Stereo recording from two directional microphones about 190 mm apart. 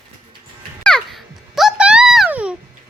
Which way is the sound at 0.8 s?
5° left (ahead or behind).